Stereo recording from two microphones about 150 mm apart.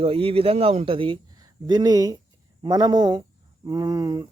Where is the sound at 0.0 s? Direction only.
40° right (ahead or behind).